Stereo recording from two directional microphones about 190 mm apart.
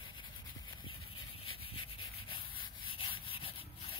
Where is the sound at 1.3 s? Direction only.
30° left (ahead or behind).